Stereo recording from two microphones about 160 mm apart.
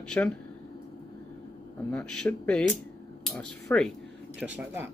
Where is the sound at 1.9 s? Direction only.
5° left (ahead or behind).